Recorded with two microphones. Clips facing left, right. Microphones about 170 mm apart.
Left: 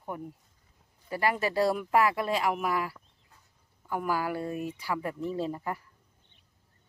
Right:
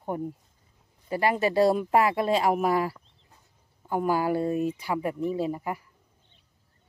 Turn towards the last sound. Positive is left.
turn(degrees=-10)  # may be behind; listen again after turning